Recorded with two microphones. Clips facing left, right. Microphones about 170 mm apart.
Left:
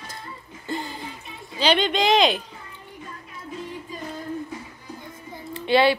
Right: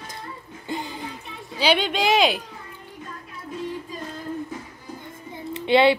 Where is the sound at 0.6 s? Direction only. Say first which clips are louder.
Even; 15° right (ahead or behind).